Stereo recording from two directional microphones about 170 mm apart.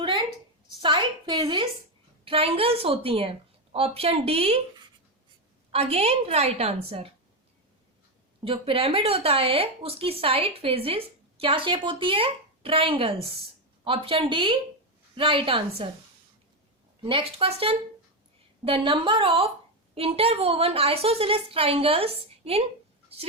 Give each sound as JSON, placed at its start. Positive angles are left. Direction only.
{"t": 0.7, "sound": "a woman's voice", "side_deg": -30}
{"t": 5.7, "sound": "speech", "side_deg": -35}
{"t": 8.4, "sound": "speech", "side_deg": -35}
{"t": 17.0, "sound": "speech", "side_deg": -30}